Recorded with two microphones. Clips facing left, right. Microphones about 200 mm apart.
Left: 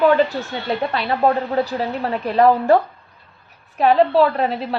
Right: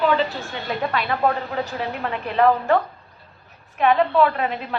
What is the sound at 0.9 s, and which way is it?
A woman's voice, 35° left (ahead or behind).